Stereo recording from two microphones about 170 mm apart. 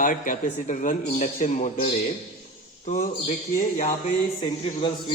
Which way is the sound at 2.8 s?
45° left (ahead or behind).